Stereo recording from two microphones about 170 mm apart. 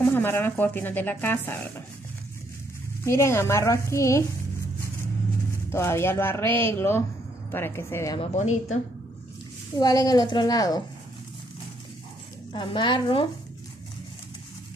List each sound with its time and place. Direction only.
0.0 s speech: 10° left (ahead or behind)
3.1 s speech: 15° left (ahead or behind)
5.7 s speech: 15° left (ahead or behind)
8.2 s a woman's voice: 40° left (ahead or behind)
9.8 s a woman's voice: 20° left (ahead or behind)
12.5 s a woman's voice: 30° left (ahead or behind)